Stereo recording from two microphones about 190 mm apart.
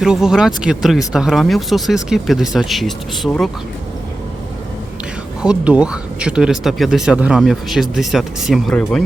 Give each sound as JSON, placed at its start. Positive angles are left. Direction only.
{"t": 0.0, "sound": "speech", "side_deg": -5}
{"t": 5.4, "sound": "speech", "side_deg": -5}